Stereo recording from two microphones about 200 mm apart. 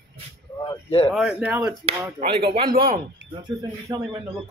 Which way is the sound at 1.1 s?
5° right (ahead or behind).